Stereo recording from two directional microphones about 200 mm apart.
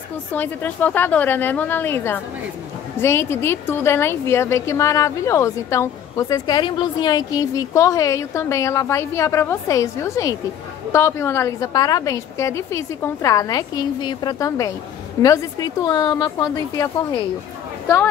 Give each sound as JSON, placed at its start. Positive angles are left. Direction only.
{"t": 0.3, "sound": "a woman's voice", "side_deg": 10}